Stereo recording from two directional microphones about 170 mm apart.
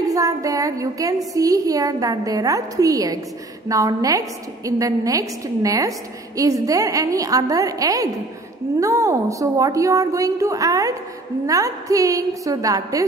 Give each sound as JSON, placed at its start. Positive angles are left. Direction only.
{"t": 0.1, "sound": "a woman's voice", "side_deg": -20}